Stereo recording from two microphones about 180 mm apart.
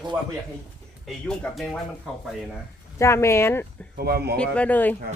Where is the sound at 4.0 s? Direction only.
60° right (ahead or behind).